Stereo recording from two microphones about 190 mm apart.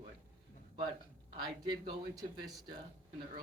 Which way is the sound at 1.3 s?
20° right (ahead or behind).